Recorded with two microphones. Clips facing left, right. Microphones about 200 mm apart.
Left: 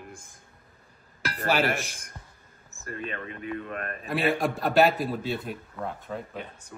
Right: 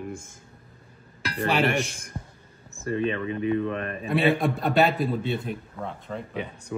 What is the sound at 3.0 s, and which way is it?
Speech, 30° right (ahead or behind).